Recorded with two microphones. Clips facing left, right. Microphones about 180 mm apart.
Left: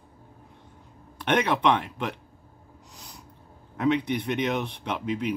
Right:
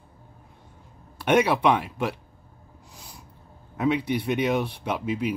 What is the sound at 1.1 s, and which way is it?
Speech, 10° right (ahead or behind).